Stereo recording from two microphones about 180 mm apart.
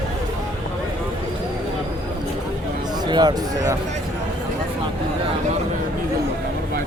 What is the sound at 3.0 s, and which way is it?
Speech, 25° right (ahead or behind).